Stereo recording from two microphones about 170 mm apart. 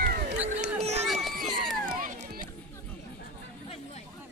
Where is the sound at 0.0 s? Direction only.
60° right (ahead or behind).